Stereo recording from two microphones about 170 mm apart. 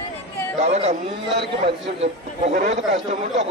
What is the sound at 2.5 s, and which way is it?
Speech, 50° right (ahead or behind).